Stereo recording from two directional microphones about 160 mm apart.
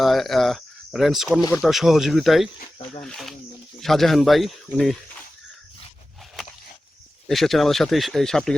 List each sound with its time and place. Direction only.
0.0 s speech: centre (ahead or behind)
7.3 s speech: centre (ahead or behind)